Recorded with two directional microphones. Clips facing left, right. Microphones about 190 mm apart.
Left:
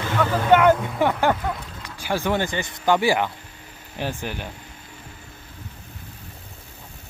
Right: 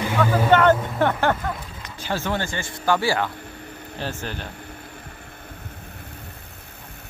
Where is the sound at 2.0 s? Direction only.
15° left (ahead or behind).